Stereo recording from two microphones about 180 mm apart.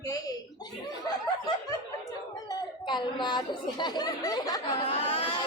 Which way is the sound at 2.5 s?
25° left (ahead or behind).